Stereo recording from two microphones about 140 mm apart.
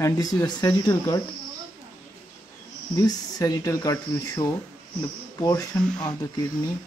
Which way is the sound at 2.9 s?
25° left (ahead or behind).